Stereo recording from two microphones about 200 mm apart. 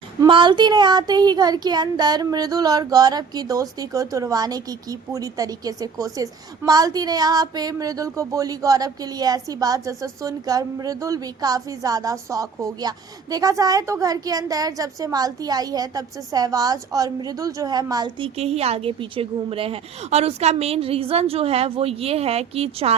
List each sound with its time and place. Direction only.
0.2 s speech: 25° right (ahead or behind)